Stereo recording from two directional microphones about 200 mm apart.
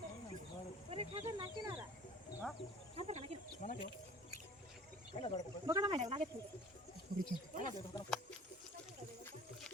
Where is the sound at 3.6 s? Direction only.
40° left (ahead or behind).